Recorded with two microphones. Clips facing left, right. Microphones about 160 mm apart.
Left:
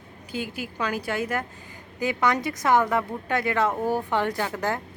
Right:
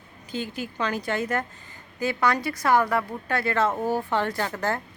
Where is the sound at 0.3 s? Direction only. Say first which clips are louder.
Right 1 dB; 10° left (ahead or behind).